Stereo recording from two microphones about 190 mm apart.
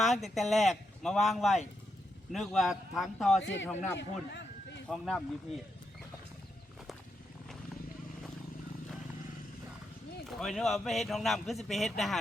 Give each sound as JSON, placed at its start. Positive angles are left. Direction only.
{"t": 0.0, "sound": "speech", "side_deg": 0}
{"t": 3.4, "sound": "a man's voice", "side_deg": 75}
{"t": 4.9, "sound": "speech", "side_deg": 0}
{"t": 10.2, "sound": "speech", "side_deg": 0}